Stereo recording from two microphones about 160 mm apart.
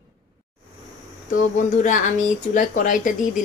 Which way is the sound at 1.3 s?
55° left (ahead or behind).